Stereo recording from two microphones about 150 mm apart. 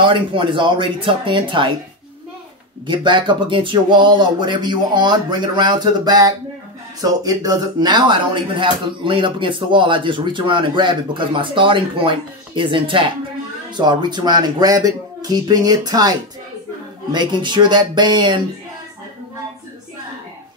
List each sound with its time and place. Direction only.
0.0 s speech: 35° right (ahead or behind)
2.9 s speech: 30° right (ahead or behind)